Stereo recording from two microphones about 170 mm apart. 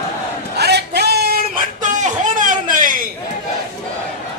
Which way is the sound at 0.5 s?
75° right (ahead or behind).